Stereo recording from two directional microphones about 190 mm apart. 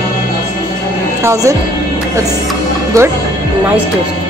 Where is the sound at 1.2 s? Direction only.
15° right (ahead or behind).